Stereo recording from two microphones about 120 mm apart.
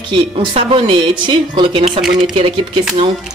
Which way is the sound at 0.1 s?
45° right (ahead or behind).